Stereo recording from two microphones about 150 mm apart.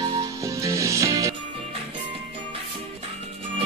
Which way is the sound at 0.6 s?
20° right (ahead or behind).